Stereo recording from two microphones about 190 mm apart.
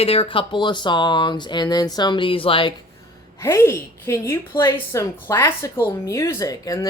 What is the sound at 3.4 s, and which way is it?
A woman's voice, 15° left (ahead or behind).